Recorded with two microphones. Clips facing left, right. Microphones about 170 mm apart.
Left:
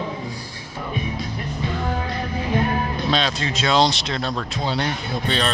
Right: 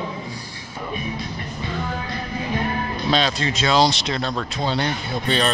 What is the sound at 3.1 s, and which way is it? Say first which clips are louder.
Speech: right 4 dB; centre (ahead or behind).